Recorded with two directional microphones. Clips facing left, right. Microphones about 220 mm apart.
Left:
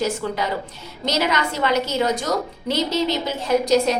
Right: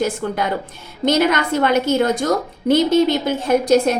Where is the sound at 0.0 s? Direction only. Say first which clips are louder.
Right 3 dB; 55° right (ahead or behind).